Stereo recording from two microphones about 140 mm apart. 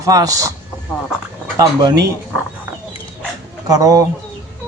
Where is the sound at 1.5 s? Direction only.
25° right (ahead or behind).